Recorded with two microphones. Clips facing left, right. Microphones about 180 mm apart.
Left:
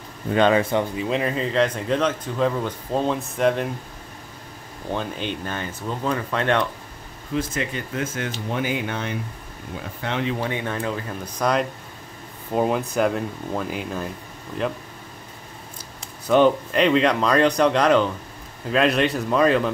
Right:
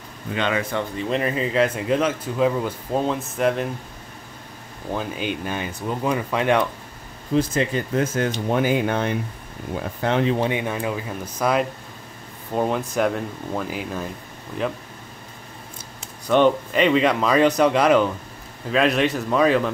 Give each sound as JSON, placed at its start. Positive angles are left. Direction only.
{"t": 0.3, "sound": "speech", "side_deg": 40}
{"t": 0.6, "sound": "speech", "side_deg": 25}
{"t": 0.9, "sound": "a man's voice", "side_deg": 0}
{"t": 4.9, "sound": "speech", "side_deg": -5}
{"t": 7.3, "sound": "speech", "side_deg": -35}
{"t": 10.4, "sound": "a man's voice", "side_deg": -15}
{"t": 16.3, "sound": "a man's voice", "side_deg": 0}